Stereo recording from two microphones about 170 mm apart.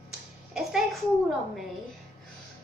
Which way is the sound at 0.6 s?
Centre (ahead or behind).